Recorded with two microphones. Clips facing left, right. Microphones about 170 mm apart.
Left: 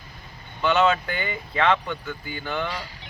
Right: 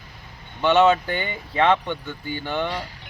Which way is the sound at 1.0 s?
30° right (ahead or behind).